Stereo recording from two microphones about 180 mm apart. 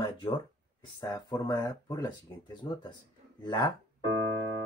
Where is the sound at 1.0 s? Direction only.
20° left (ahead or behind).